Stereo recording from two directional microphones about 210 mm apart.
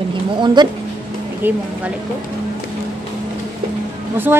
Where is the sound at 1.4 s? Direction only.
10° right (ahead or behind).